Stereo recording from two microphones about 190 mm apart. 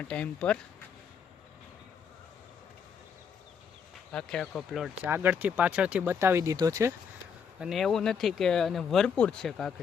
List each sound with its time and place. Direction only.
0.0 s speech: 5° left (ahead or behind)
4.1 s speech: 5° left (ahead or behind); by 6.9 s 15° right (ahead or behind)
7.6 s speech: centre (ahead or behind)